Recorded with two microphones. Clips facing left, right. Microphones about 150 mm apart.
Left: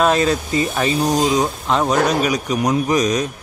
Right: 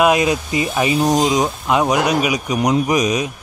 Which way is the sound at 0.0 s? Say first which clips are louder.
Right 1 dB; 15° right (ahead or behind).